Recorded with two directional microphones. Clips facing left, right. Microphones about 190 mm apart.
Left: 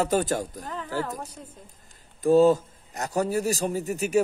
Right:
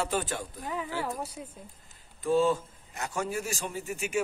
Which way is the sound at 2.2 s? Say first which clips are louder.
Left 7 dB; 40° left (ahead or behind).